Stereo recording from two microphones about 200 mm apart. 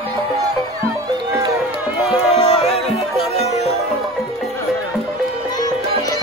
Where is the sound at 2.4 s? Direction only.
30° left (ahead or behind).